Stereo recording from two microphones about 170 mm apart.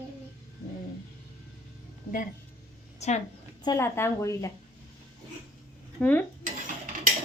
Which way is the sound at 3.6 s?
20° left (ahead or behind).